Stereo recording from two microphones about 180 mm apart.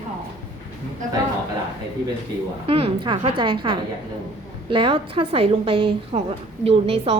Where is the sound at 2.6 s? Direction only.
30° right (ahead or behind).